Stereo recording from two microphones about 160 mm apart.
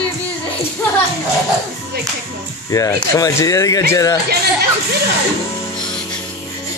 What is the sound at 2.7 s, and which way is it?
Speech, 20° left (ahead or behind).